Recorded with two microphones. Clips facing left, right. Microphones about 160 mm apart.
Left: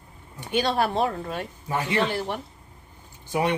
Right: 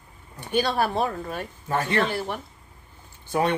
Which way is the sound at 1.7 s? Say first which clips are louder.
Right 1 dB; 15° left (ahead or behind).